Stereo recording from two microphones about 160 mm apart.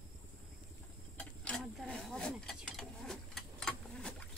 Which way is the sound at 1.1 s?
5° left (ahead or behind).